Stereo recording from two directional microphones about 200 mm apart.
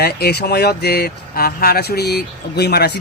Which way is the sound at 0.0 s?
55° left (ahead or behind).